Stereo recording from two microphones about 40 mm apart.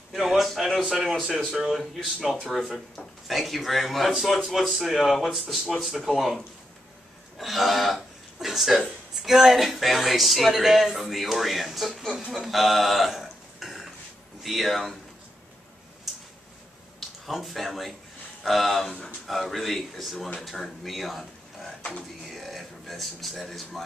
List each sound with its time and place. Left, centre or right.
0.1 s a sound: centre
0.7 s speech: centre
2.6 s speech: centre
3.3 s speech: centre
12.4 s a sound: centre
14.4 s speech: centre
16.1 s a sound: centre
17.3 s speech: centre
18.9 s speech: left
19.2 s speech: centre
21.2 s a sound: centre
22.3 s speech: centre